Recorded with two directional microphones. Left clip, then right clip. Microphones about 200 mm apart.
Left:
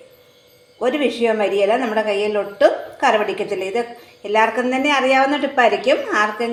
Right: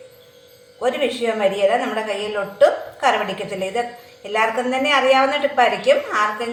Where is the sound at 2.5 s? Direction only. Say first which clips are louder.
Right 2 dB; 45° left (ahead or behind).